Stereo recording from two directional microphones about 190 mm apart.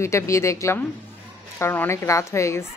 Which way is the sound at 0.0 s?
15° left (ahead or behind).